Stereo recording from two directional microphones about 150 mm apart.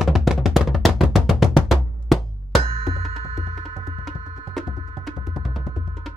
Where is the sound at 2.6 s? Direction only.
40° right (ahead or behind).